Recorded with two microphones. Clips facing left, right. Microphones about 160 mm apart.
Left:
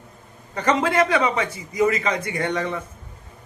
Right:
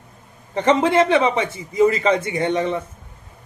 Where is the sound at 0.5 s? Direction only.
25° right (ahead or behind).